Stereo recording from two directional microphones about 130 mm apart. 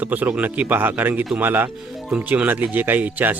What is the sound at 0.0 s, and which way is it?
Speech, 10° right (ahead or behind).